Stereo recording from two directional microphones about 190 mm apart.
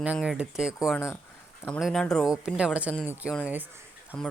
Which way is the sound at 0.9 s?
10° left (ahead or behind).